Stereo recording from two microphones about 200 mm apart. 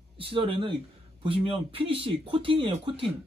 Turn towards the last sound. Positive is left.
turn(degrees=-25)  # may be behind; listen again after turning